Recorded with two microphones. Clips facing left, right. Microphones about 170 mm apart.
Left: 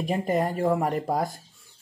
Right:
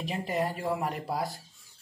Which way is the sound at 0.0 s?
50° left (ahead or behind).